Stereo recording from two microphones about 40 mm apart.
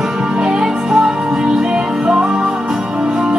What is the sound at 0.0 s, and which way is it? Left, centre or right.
Music, centre.